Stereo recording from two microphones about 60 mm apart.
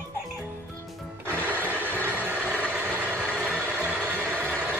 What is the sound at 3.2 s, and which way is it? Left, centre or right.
Vehicle, left.